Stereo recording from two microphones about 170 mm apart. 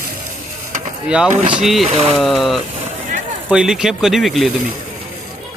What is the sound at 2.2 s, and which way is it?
Speech, centre (ahead or behind).